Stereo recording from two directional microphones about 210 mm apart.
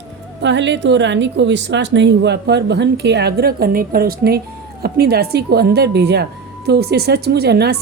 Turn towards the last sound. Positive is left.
turn(degrees=-50)  # may be behind; listen again after turning